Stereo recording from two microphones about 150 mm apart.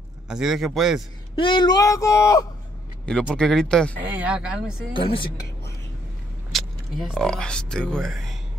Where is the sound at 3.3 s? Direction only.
5° left (ahead or behind).